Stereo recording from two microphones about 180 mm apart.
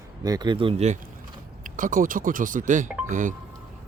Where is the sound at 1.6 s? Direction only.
45° right (ahead or behind).